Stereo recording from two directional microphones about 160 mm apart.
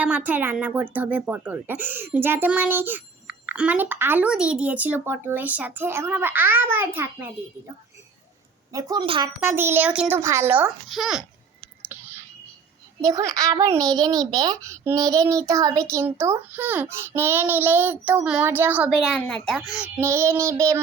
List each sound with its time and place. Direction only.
0.0 s speech: 10° right (ahead or behind)
8.7 s a woman's voice: 25° right (ahead or behind)
9.4 s speech: 15° right (ahead or behind)
10.8 s a child's voice: centre (ahead or behind)
11.9 s whispering: 10° right (ahead or behind)
13.0 s speech: 20° right (ahead or behind); by 19.9 s 5° right (ahead or behind)
20.0 s speech: 15° right (ahead or behind)